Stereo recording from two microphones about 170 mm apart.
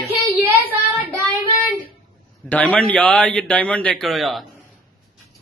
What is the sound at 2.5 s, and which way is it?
A man's voice, 10° left (ahead or behind).